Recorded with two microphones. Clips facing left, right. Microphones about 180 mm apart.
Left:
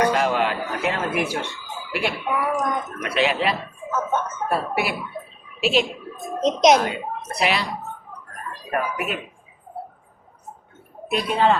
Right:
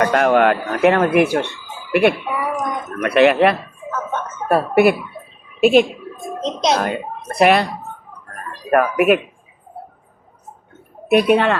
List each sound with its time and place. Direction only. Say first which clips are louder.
0.0 s speech: right 6 dB; 55° right (ahead or behind)
2.2 s a sound: right 1 dB; centre (ahead or behind)
3.0 s speech: right 10 dB; 60° right (ahead or behind)
6.4 s speech: left 3 dB; 20° left (ahead or behind)
6.8 s speech: right 4 dB; 55° right (ahead or behind)
8.7 s speech: right 12 dB; 70° right (ahead or behind)
11.1 s speech: right 6 dB; 65° right (ahead or behind)